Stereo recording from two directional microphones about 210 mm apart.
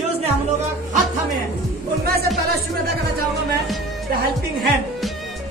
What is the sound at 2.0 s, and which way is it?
Music, 45° right (ahead or behind).